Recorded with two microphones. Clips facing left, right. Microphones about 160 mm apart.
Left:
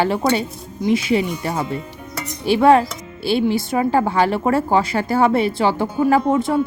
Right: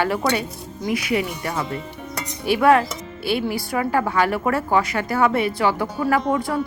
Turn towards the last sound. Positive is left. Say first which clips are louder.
# left 4 dB
turn(degrees=25)  # may be behind; listen again after turning